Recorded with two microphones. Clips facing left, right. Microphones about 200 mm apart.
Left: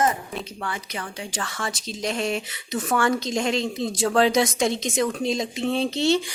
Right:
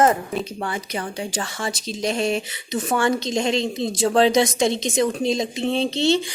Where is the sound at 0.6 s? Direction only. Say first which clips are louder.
Right 5 dB; 35° right (ahead or behind).